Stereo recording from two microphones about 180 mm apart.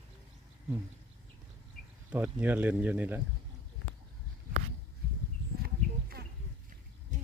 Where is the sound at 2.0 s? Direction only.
10° right (ahead or behind).